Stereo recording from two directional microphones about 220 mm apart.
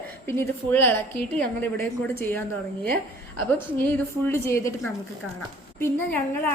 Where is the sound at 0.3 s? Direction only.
10° left (ahead or behind).